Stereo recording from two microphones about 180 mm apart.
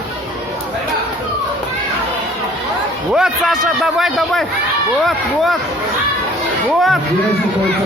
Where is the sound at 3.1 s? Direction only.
Centre (ahead or behind).